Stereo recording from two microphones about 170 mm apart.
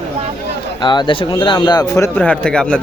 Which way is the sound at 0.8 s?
25° left (ahead or behind).